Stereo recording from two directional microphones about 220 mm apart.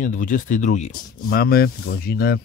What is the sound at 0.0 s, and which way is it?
Speech, 35° left (ahead or behind).